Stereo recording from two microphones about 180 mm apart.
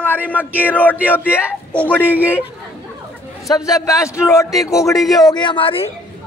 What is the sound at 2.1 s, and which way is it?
Speech, 10° right (ahead or behind).